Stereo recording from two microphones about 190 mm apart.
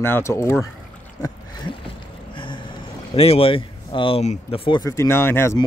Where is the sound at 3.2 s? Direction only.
30° left (ahead or behind).